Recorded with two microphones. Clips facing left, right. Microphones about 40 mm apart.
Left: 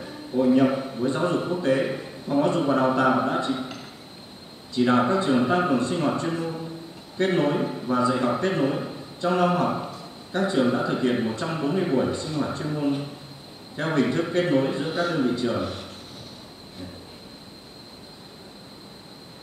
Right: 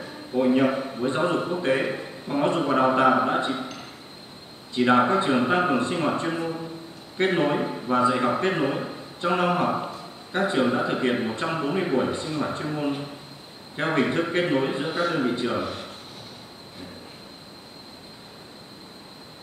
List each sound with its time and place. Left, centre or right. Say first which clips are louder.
0.4 s a man's voice: left 1 dB; right
0.7 s a man's voice: even; centre
1.0 s a man's voice: even; right
4.7 s a man's voice: right 1 dB; right
15.2 s a man's voice: left 1 dB; right
15.5 s a man's voice: even; centre